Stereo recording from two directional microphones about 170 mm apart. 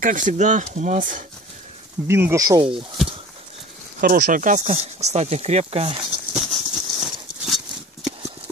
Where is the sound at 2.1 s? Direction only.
15° right (ahead or behind).